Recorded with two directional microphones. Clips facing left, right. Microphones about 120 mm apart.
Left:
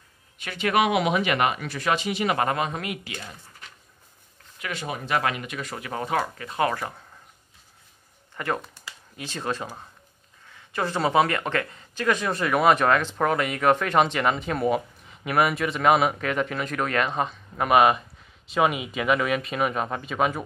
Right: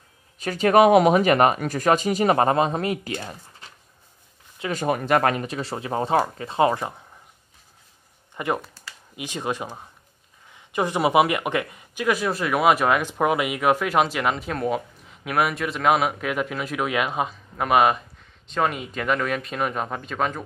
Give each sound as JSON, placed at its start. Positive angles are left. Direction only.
{"t": 0.4, "sound": "speech", "side_deg": -40}
{"t": 4.7, "sound": "speech", "side_deg": -50}
{"t": 8.4, "sound": "speech", "side_deg": -20}